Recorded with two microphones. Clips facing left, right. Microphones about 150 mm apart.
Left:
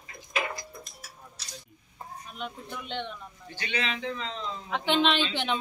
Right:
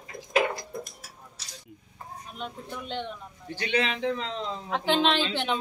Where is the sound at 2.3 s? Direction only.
40° right (ahead or behind).